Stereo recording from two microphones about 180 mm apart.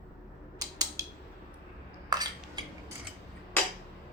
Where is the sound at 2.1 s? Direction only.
20° right (ahead or behind).